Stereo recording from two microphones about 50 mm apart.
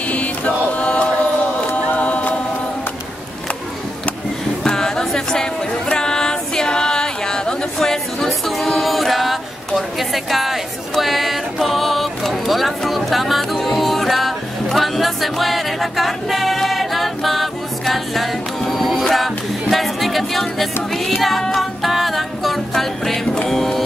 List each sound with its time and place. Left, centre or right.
0.7 s chant: left
1.9 s a sound: left
4.6 s music: centre